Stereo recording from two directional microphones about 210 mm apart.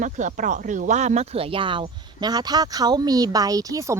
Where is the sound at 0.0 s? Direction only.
35° right (ahead or behind).